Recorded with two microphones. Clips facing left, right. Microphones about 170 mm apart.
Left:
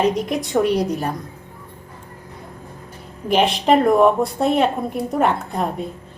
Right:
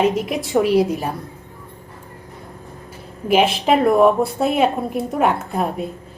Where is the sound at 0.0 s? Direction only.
5° right (ahead or behind).